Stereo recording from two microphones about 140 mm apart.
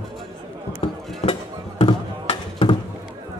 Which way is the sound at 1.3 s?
40° left (ahead or behind).